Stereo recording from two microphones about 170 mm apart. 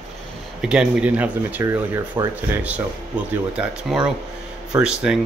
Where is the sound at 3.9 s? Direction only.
Centre (ahead or behind).